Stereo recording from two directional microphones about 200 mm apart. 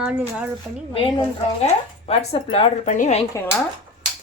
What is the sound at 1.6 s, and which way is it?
Speech, 30° left (ahead or behind).